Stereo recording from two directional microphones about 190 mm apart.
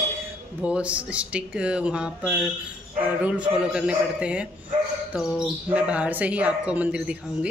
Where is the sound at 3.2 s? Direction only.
5° right (ahead or behind).